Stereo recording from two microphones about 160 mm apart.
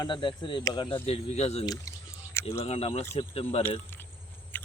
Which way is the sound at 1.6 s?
25° left (ahead or behind).